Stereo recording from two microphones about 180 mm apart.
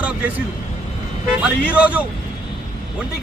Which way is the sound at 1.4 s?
5° right (ahead or behind).